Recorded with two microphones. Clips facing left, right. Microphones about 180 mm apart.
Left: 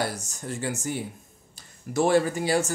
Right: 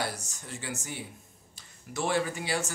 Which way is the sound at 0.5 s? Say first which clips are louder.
Left 9 dB; 45° left (ahead or behind).